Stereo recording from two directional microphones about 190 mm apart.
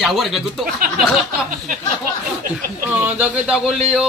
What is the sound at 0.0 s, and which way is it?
A man's voice, centre (ahead or behind).